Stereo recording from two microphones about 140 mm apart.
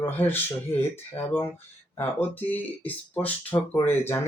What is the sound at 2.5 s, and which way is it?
Speech, 10° left (ahead or behind).